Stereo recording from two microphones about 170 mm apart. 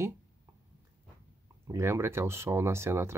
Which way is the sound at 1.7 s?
15° right (ahead or behind).